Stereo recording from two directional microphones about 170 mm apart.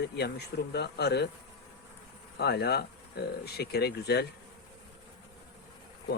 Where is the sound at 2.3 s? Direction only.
75° left (ahead or behind).